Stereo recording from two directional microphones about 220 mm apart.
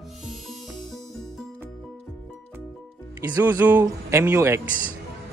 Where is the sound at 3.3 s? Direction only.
10° right (ahead or behind).